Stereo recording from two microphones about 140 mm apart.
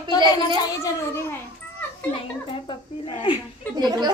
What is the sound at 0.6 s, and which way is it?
Speech, 20° left (ahead or behind).